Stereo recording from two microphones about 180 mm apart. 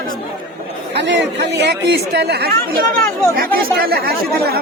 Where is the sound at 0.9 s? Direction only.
75° right (ahead or behind); by 4.6 s 60° right (ahead or behind).